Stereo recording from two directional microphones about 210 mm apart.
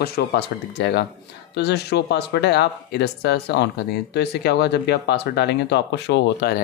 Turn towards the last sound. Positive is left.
turn(degrees=55)  # may be behind; listen again after turning